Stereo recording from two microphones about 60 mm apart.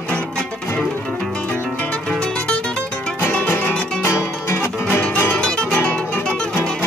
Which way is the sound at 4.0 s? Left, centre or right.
Left.